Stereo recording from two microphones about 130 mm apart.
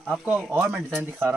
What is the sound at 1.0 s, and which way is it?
Speech, 15° right (ahead or behind).